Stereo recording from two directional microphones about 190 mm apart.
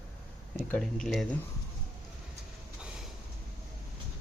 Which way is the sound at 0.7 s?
5° left (ahead or behind).